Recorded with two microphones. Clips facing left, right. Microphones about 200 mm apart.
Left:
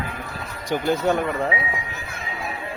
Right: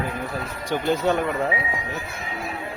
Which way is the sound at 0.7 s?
15° left (ahead or behind).